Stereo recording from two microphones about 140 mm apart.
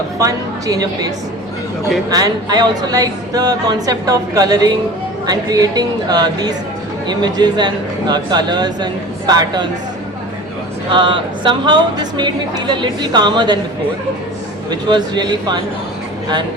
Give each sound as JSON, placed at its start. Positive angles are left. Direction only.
{"t": 0.2, "sound": "speech", "side_deg": -25}
{"t": 10.9, "sound": "speech", "side_deg": -35}
{"t": 14.7, "sound": "speech", "side_deg": -30}